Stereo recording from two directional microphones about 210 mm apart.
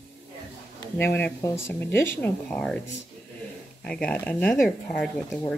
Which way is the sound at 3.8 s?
5° left (ahead or behind).